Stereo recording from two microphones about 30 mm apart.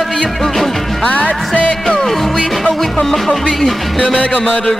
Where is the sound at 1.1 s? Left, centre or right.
Left.